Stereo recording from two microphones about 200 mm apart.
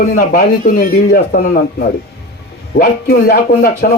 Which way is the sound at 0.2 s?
45° left (ahead or behind).